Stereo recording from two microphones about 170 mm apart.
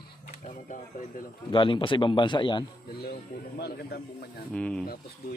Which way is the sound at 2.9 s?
65° left (ahead or behind).